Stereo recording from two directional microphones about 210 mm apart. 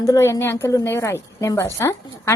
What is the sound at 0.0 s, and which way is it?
A woman's voice, 15° left (ahead or behind).